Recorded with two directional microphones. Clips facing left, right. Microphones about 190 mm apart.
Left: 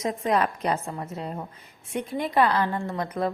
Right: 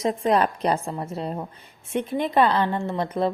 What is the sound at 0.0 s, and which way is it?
A woman's voice, 30° right (ahead or behind).